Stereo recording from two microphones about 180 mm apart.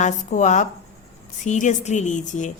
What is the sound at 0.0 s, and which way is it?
A woman's voice, 40° left (ahead or behind).